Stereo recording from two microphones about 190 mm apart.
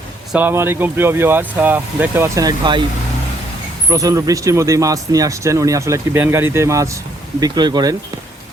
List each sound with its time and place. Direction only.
0.3 s speech: 10° right (ahead or behind)
3.8 s speech: 20° right (ahead or behind)